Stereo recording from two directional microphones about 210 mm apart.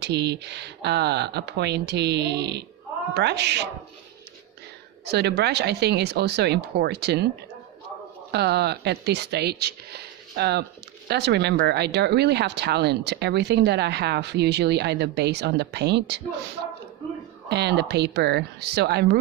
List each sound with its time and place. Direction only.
0.0 s speech: 55° right (ahead or behind)
5.0 s speech: 50° right (ahead or behind)
8.3 s speech: 50° right (ahead or behind)
17.5 s speech: 55° right (ahead or behind)